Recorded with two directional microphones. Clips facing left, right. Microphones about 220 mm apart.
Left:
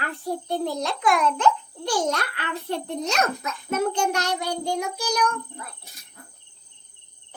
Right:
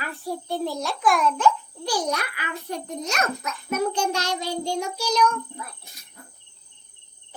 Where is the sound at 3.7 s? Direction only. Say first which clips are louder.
Left 1 dB; 25° left (ahead or behind).